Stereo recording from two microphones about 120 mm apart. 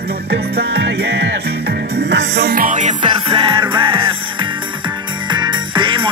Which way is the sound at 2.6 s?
90° right.